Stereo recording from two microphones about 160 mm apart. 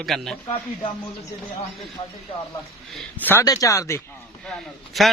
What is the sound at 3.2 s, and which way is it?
Speech, 15° left (ahead or behind).